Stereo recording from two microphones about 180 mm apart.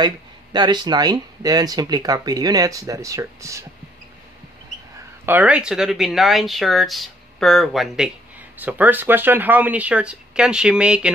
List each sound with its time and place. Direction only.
0.0 s speech: 25° right (ahead or behind)
5.2 s speech: 10° right (ahead or behind)